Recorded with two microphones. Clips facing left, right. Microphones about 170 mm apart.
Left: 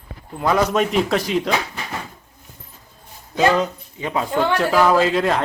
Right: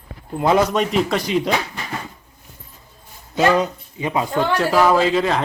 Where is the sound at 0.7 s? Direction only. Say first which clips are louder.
Left 1 dB; centre (ahead or behind).